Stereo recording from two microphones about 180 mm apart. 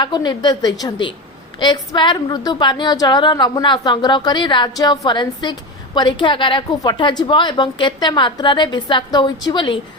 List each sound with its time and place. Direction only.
0.0 s a woman's voice: 25° left (ahead or behind)